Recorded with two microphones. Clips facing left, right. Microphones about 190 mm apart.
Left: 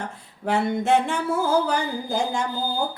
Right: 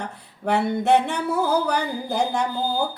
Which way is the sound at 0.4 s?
65° right (ahead or behind).